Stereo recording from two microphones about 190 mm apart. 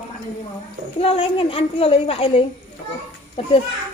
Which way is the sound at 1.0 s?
30° left (ahead or behind).